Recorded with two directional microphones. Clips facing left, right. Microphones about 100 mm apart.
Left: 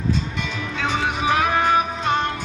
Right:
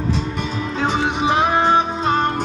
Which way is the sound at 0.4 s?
35° right (ahead or behind).